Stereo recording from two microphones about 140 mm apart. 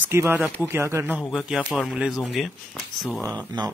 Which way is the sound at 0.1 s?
20° right (ahead or behind).